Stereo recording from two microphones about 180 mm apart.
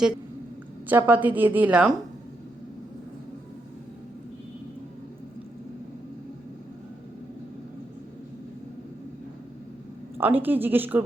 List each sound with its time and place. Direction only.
0.9 s a woman's voice: 10° right (ahead or behind)
10.2 s a woman's voice: 10° right (ahead or behind)